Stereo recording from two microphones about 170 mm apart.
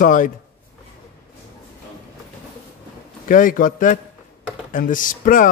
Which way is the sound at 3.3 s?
50° left (ahead or behind).